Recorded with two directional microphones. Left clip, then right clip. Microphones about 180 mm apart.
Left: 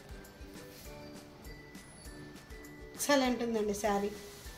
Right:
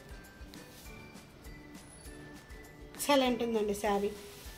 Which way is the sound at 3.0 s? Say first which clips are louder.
Right 1 dB; 25° right (ahead or behind).